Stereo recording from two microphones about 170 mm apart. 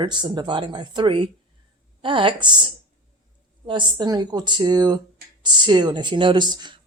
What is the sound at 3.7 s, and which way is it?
Speech, 25° right (ahead or behind).